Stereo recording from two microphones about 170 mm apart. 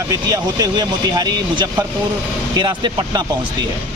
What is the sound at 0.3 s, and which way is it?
Speech, 20° right (ahead or behind).